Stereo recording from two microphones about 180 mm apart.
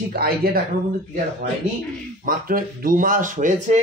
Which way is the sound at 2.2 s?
50° right (ahead or behind).